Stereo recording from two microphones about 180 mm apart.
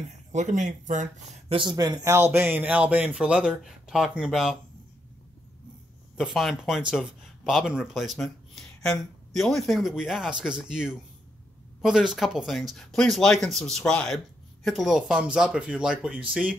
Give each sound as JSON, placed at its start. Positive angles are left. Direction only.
{"t": 0.3, "sound": "speech", "side_deg": -40}
{"t": 1.5, "sound": "speech", "side_deg": -25}
{"t": 6.1, "sound": "speech", "side_deg": 0}